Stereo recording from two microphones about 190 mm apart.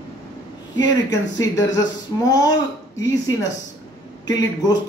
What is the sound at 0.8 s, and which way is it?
Speech, 20° left (ahead or behind).